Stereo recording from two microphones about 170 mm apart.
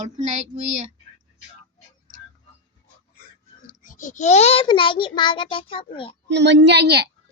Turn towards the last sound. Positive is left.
turn(degrees=-80)